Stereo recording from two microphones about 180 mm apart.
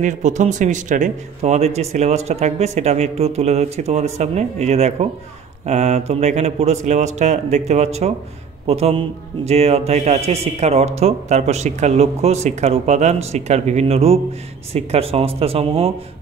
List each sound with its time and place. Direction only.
0.0 s speech: 40° right (ahead or behind)